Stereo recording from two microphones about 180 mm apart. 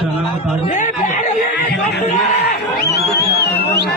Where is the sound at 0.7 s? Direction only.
45° left (ahead or behind).